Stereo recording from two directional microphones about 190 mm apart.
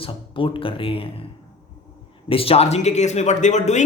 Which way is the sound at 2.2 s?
30° left (ahead or behind).